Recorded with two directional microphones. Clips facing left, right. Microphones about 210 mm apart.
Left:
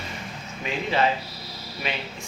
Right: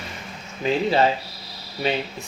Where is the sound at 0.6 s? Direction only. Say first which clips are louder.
Right 5 dB; 35° right (ahead or behind).